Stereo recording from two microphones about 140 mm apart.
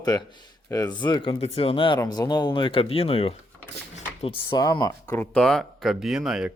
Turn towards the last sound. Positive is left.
turn(degrees=-5)  # may be behind; listen again after turning